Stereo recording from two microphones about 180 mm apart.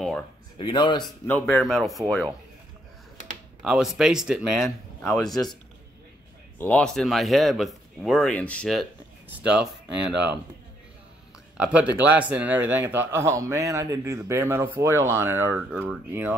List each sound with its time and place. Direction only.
0.6 s speech: 25° left (ahead or behind)
1.2 s speech: 10° left (ahead or behind)
3.6 s speech: centre (ahead or behind)
6.6 s speech: 5° left (ahead or behind)
11.5 s speech: 5° right (ahead or behind)